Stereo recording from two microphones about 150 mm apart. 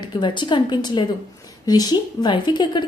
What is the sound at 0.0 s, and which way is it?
A woman's voice, 30° left (ahead or behind).